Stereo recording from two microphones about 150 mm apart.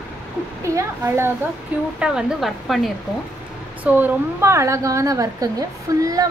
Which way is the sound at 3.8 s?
10° right (ahead or behind).